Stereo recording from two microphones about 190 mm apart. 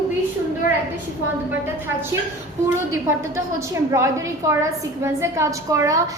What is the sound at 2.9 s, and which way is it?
A woman's voice, 15° right (ahead or behind).